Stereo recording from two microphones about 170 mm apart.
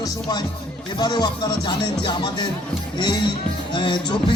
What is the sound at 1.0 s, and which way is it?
Speech, 25° left (ahead or behind).